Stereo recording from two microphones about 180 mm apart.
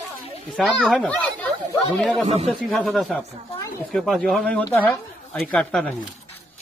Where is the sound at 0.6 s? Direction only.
5° left (ahead or behind).